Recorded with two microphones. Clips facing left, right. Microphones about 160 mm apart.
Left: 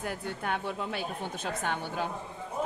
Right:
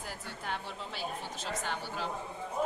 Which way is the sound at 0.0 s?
60° left (ahead or behind).